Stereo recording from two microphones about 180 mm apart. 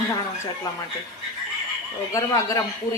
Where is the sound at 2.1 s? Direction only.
20° left (ahead or behind).